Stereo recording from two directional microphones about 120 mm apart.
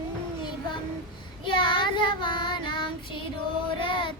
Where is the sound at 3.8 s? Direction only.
40° left (ahead or behind).